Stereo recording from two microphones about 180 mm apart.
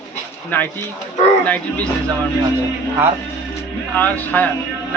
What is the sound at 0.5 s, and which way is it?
Speech, 10° left (ahead or behind).